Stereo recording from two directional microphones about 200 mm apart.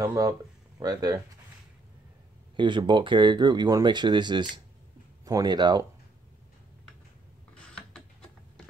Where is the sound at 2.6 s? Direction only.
25° right (ahead or behind).